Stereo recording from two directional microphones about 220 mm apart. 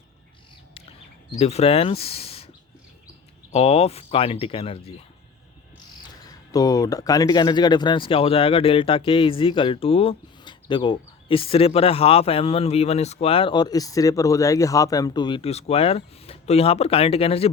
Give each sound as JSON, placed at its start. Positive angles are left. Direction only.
{"t": 1.4, "sound": "speech", "side_deg": 30}
{"t": 3.5, "sound": "speech", "side_deg": 30}
{"t": 6.5, "sound": "speech", "side_deg": 15}